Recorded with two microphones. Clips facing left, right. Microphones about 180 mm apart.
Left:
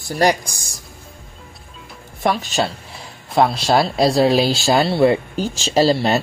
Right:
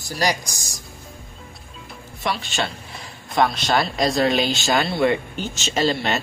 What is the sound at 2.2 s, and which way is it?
Speech, 45° left (ahead or behind).